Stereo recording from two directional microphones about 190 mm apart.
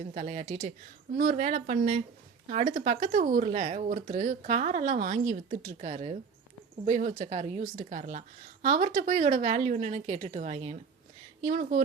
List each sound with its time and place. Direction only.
0.1 s speech: 35° right (ahead or behind)
11.4 s speech: 45° right (ahead or behind)